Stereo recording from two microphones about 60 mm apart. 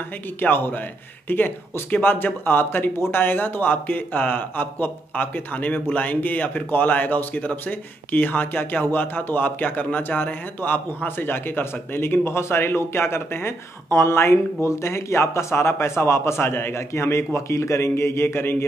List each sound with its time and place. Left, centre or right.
0.4 s a man's voice: left